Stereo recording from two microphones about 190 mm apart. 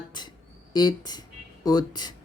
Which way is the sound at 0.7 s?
20° left (ahead or behind).